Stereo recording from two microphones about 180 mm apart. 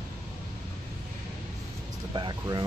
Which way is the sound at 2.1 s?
25° right (ahead or behind).